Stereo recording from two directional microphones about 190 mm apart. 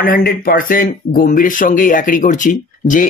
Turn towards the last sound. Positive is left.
turn(degrees=45)  # may be behind; listen again after turning